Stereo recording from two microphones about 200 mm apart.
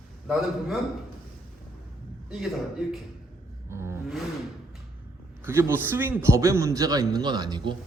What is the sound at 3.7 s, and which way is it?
Roar, 15° right (ahead or behind).